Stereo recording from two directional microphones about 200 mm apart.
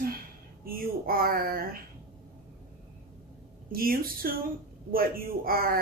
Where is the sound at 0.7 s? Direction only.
45° right (ahead or behind).